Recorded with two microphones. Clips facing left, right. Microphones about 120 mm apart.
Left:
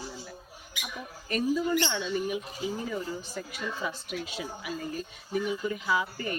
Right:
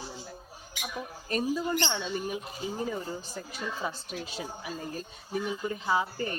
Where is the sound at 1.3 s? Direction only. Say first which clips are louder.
Left 2 dB; 35° right (ahead or behind).